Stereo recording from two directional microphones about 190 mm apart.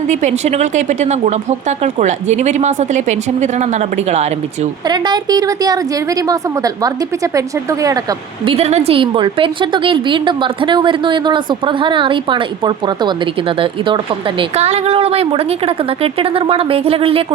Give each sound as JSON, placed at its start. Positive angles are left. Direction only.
{"t": 0.1, "sound": "speech", "side_deg": -40}
{"t": 4.9, "sound": "a woman's voice", "side_deg": -20}
{"t": 8.4, "sound": "a woman's voice", "side_deg": -35}